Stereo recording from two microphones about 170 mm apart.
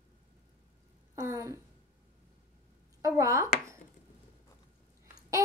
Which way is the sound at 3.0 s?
15° right (ahead or behind).